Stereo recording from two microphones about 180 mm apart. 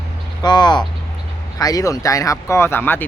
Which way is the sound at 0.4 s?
25° left (ahead or behind).